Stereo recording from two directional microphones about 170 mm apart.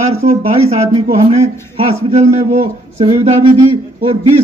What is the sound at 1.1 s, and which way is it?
A man's voice, 35° right (ahead or behind).